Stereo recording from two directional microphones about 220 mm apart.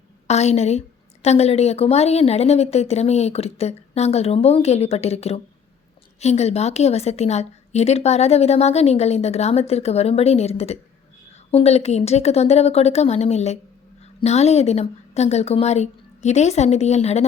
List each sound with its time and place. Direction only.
0.3 s a woman's voice: 30° left (ahead or behind)